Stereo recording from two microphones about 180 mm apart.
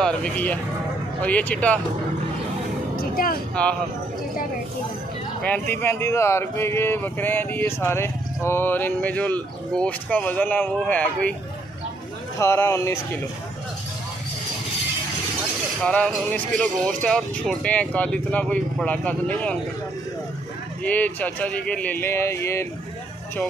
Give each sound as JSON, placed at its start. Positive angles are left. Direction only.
{"t": 0.0, "sound": "speech", "side_deg": 5}
{"t": 3.0, "sound": "speech", "side_deg": 55}
{"t": 3.6, "sound": "speech", "side_deg": 5}
{"t": 5.4, "sound": "speech", "side_deg": 10}
{"t": 12.4, "sound": "speech", "side_deg": 15}
{"t": 15.8, "sound": "music", "side_deg": 5}
{"t": 17.0, "sound": "speech", "side_deg": 5}
{"t": 20.8, "sound": "speech", "side_deg": 10}